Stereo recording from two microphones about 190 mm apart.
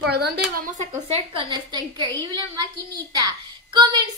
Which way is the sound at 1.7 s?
25° right (ahead or behind).